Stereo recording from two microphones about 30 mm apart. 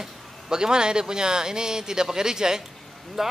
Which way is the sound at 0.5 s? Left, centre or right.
Right.